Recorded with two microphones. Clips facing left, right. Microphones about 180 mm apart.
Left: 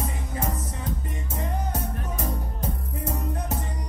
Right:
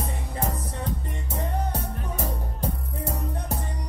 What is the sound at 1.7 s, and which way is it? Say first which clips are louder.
Music: left 1 dB; 35° right (ahead or behind).